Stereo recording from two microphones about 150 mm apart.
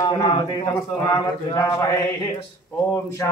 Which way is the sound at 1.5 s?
20° left (ahead or behind).